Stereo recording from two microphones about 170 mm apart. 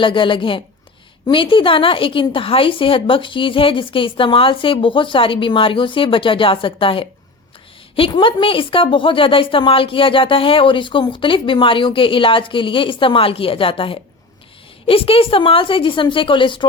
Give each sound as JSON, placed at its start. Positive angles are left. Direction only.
{"t": 0.0, "sound": "speech", "side_deg": 30}